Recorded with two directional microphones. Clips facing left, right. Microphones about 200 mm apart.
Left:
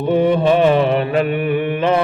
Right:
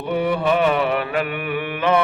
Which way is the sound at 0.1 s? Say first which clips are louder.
Left 5 dB; 25° left (ahead or behind).